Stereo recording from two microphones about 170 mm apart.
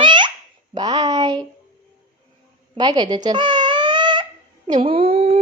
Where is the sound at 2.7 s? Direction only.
25° right (ahead or behind).